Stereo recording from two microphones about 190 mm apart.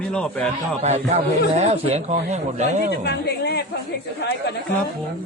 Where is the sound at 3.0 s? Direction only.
60° left (ahead or behind).